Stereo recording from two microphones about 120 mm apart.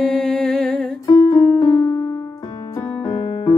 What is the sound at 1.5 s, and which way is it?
Music, 25° left (ahead or behind).